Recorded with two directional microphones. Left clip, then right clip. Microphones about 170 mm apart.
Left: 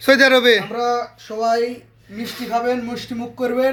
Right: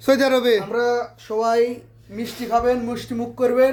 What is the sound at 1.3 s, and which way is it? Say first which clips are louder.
Speech: right 2 dB; 20° right (ahead or behind).